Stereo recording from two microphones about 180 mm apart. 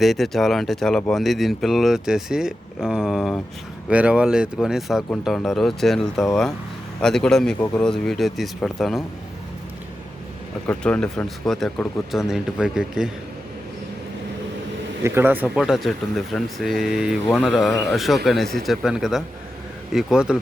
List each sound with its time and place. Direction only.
0.0 s speech: centre (ahead or behind)
10.7 s speech: 5° left (ahead or behind)
15.0 s speech: 10° right (ahead or behind)